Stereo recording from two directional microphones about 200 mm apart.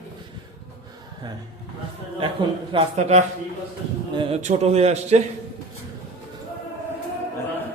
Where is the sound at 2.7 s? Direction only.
35° right (ahead or behind).